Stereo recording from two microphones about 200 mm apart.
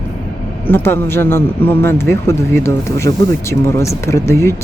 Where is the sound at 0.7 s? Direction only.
10° left (ahead or behind).